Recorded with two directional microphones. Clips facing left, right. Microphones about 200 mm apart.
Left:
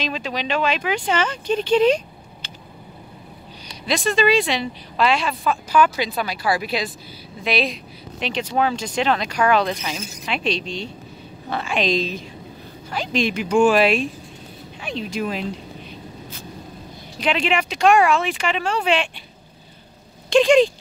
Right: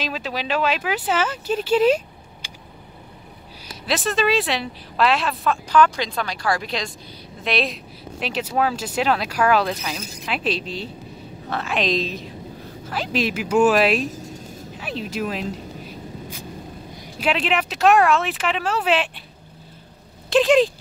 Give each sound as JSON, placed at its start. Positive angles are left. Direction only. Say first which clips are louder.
{"t": 0.0, "sound": "a woman's voice", "louder": "left 1 dB", "side_deg": -5}
{"t": 2.4, "sound": "vehicle", "louder": "left 1 dB", "side_deg": -10}
{"t": 3.6, "sound": "a woman's voice", "louder": "left 2 dB", "side_deg": -5}
{"t": 14.0, "sound": "a sound", "louder": "right 1 dB", "side_deg": -45}
{"t": 14.8, "sound": "speech", "louder": "left 1 dB", "side_deg": -5}
{"t": 15.8, "sound": "a sound", "louder": "right 2 dB", "side_deg": -10}
{"t": 17.2, "sound": "a woman's voice", "louder": "left 1 dB", "side_deg": -5}
{"t": 20.2, "sound": "speech", "louder": "left 2 dB", "side_deg": 0}